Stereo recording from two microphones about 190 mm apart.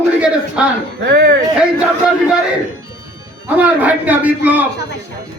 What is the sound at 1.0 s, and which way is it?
Speech, 55° right (ahead or behind).